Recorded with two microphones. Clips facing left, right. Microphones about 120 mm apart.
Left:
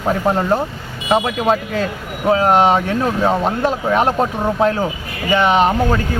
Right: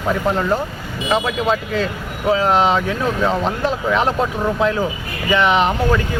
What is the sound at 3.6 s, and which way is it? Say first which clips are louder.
Speech: left 2 dB; 45° left (ahead or behind).